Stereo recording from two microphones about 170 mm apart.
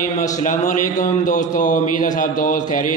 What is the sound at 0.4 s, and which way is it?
Mantra, 45° left (ahead or behind).